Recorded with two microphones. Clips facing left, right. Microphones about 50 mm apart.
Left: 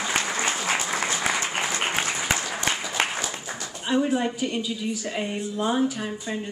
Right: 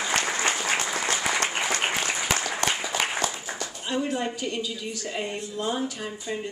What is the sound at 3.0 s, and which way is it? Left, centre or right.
Applause, left.